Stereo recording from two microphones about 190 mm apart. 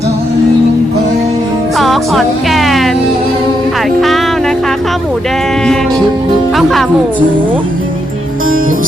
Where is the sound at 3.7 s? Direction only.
Centre (ahead or behind).